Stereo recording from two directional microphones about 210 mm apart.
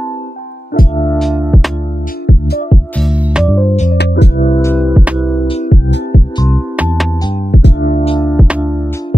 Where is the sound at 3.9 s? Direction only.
55° left (ahead or behind).